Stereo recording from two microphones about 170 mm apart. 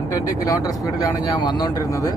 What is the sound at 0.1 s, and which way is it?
Speech, 20° left (ahead or behind).